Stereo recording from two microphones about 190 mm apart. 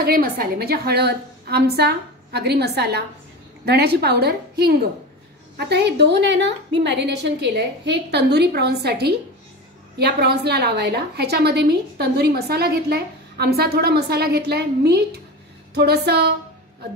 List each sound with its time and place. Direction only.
0.0 s a woman's voice: 55° right (ahead or behind)